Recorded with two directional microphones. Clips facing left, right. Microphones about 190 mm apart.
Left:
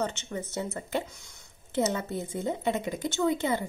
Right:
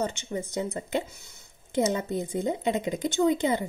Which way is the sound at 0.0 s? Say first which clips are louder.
Right 2 dB; 10° right (ahead or behind).